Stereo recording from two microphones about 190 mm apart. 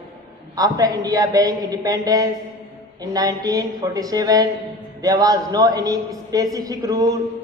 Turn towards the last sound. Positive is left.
turn(degrees=-20)  # may be behind; listen again after turning